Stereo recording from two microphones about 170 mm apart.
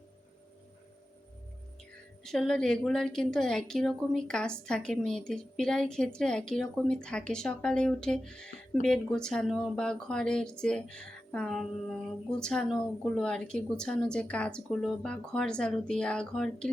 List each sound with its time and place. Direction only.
2.2 s a woman's voice: 5° left (ahead or behind)